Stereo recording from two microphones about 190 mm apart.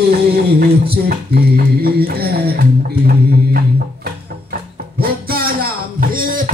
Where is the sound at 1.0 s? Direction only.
55° right (ahead or behind).